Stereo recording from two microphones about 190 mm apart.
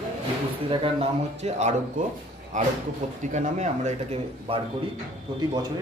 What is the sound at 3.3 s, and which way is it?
Speech, 40° right (ahead or behind).